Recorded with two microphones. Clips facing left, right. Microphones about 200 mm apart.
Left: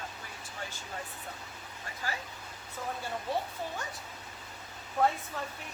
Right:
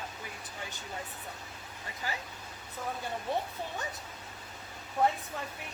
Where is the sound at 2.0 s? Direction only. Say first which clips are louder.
Even; 20° right (ahead or behind).